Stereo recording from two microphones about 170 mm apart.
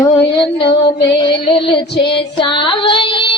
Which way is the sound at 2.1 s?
30° left (ahead or behind).